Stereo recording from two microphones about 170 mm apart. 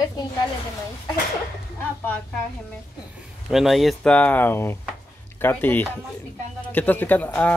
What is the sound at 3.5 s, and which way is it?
Speech, centre (ahead or behind).